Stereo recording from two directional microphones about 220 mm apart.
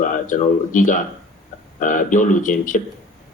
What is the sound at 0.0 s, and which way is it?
Speech, 35° left (ahead or behind).